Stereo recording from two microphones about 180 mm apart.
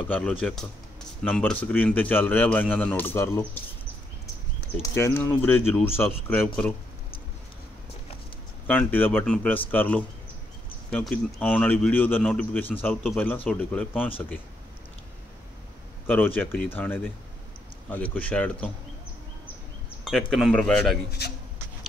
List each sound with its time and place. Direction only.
0.1 s a man's voice: 5° left (ahead or behind)
4.8 s speech: 15° left (ahead or behind)
8.6 s speech: 10° left (ahead or behind)
16.4 s speech: 5° left (ahead or behind)
20.1 s a man's voice: centre (ahead or behind)
21.2 s speech: 65° left (ahead or behind)